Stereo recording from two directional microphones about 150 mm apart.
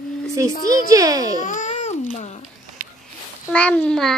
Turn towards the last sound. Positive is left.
turn(degrees=5)  # may be behind; listen again after turning